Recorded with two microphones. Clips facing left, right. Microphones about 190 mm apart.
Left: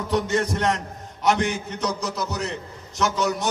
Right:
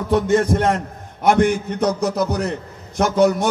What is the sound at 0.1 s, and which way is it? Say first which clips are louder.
A man's voice: right 7 dB; 50° right (ahead or behind).